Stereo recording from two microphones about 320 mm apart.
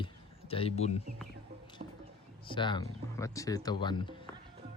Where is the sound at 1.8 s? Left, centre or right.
Right.